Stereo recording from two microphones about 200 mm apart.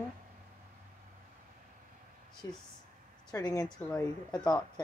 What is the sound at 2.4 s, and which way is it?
Speech, 15° left (ahead or behind).